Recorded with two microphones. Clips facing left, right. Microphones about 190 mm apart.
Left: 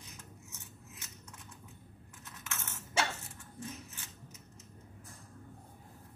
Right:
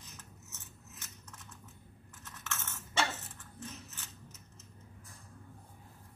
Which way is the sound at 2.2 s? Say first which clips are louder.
Right 2 dB; 10° left (ahead or behind).